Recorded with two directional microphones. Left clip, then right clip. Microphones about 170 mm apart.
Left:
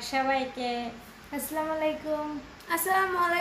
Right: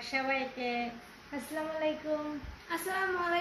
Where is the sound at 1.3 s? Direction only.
Centre (ahead or behind).